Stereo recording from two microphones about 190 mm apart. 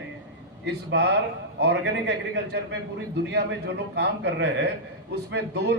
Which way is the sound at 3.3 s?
60° right (ahead or behind).